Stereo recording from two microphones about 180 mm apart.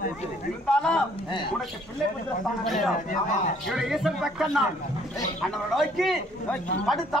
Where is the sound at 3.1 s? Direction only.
45° left (ahead or behind).